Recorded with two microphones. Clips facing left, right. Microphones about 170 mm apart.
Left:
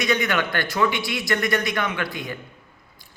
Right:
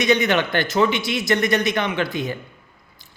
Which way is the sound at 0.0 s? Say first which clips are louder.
Right 4 dB; 20° right (ahead or behind).